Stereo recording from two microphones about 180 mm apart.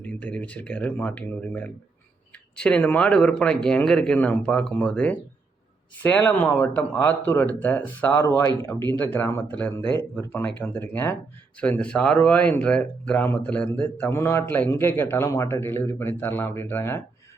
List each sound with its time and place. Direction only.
0.0 s speech: 5° left (ahead or behind)